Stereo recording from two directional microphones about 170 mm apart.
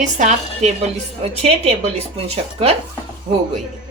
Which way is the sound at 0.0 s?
45° right (ahead or behind).